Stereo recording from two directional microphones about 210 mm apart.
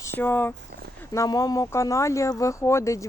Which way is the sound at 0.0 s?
10° left (ahead or behind).